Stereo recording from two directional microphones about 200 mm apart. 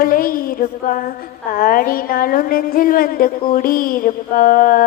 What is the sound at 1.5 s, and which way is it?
A woman's voice, 45° left (ahead or behind).